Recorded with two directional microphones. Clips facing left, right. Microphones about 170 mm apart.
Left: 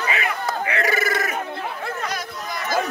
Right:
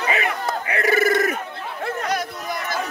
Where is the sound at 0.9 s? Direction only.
55° right (ahead or behind).